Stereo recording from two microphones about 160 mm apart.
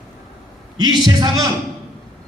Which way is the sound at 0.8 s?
25° right (ahead or behind).